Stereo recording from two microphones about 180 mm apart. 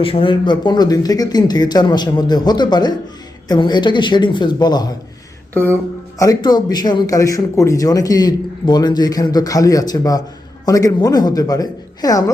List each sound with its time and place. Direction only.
0.0 s speech: 30° left (ahead or behind)
6.1 s speech: 20° left (ahead or behind)